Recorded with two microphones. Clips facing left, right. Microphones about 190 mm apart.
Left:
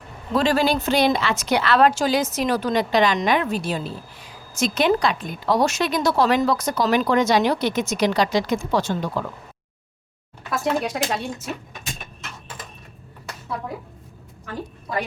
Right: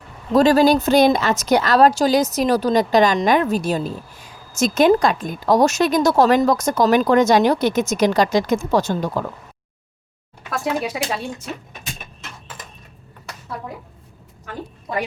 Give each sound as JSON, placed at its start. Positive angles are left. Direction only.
{"t": 0.3, "sound": "speech", "side_deg": -40}
{"t": 10.5, "sound": "speech", "side_deg": 0}